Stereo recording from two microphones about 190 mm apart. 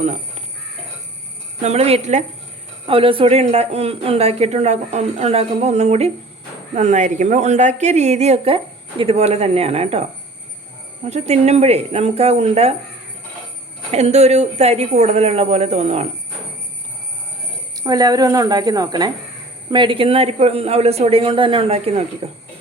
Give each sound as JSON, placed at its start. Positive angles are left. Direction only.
{"t": 0.0, "sound": "a sound", "side_deg": -35}
{"t": 1.6, "sound": "a woman's voice", "side_deg": -35}
{"t": 13.9, "sound": "a woman's voice", "side_deg": -35}
{"t": 17.7, "sound": "a woman's voice", "side_deg": -20}